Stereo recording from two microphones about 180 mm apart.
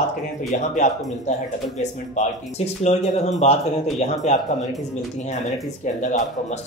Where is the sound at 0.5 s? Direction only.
40° left (ahead or behind).